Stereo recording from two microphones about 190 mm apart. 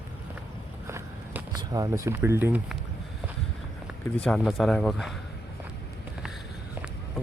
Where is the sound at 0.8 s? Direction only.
15° right (ahead or behind).